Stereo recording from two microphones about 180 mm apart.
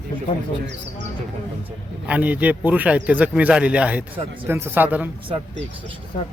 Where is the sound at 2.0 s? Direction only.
10° right (ahead or behind).